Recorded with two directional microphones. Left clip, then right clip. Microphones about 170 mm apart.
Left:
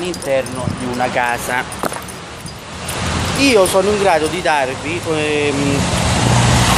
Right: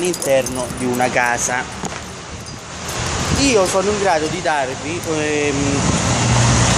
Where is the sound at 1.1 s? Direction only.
20° right (ahead or behind).